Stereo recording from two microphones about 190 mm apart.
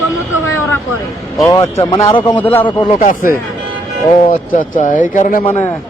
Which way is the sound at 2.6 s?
25° left (ahead or behind).